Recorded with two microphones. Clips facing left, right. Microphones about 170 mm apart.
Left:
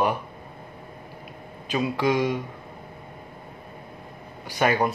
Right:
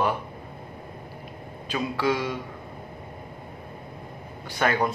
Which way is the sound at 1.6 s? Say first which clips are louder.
Left 2 dB; 15° left (ahead or behind).